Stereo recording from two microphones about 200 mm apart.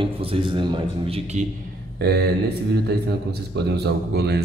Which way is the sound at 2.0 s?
50° right (ahead or behind).